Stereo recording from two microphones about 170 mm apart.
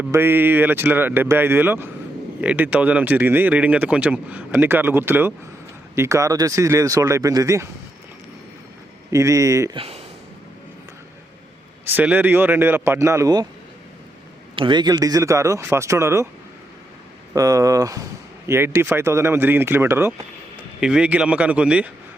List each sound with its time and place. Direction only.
0.1 s speech: 15° right (ahead or behind)
9.0 s speech: 20° right (ahead or behind)
9.7 s speech: 35° right (ahead or behind)
11.9 s speech: 10° right (ahead or behind)
14.5 s speech: 30° right (ahead or behind)
17.3 s speech: 20° right (ahead or behind)